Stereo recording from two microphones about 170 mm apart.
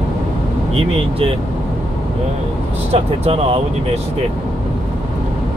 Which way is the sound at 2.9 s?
35° right (ahead or behind).